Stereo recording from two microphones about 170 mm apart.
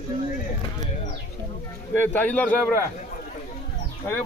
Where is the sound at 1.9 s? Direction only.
10° left (ahead or behind).